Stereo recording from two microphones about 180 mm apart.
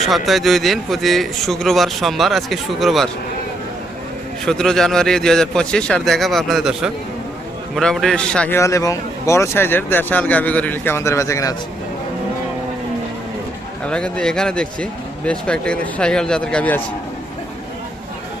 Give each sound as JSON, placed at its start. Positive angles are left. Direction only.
{"t": 0.0, "sound": "speech", "side_deg": 0}
{"t": 4.4, "sound": "a man's voice", "side_deg": 5}
{"t": 13.8, "sound": "speech", "side_deg": 5}